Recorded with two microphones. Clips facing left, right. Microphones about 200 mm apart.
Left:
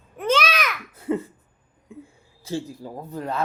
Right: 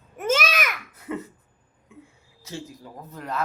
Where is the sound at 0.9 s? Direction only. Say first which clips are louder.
Left 7 dB; 30° left (ahead or behind).